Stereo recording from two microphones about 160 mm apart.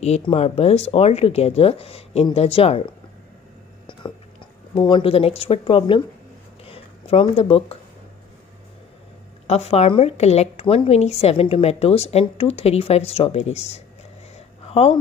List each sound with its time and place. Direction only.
0.2 s a woman's voice: 40° left (ahead or behind)
4.7 s a woman's voice: 30° left (ahead or behind)
9.5 s a woman's voice: 40° left (ahead or behind)